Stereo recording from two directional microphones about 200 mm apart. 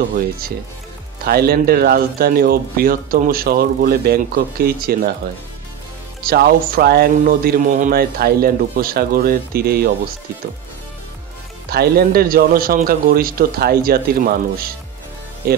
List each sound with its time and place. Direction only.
1.2 s speech: 50° right (ahead or behind)
6.2 s speech: 50° right (ahead or behind)
11.7 s speech: 50° right (ahead or behind)